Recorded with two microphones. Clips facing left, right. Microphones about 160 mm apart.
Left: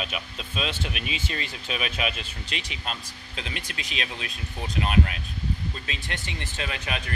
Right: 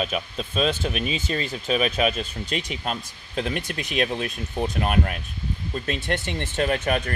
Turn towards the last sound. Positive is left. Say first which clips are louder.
# right 9 dB
turn(degrees=-45)  # may be behind; listen again after turning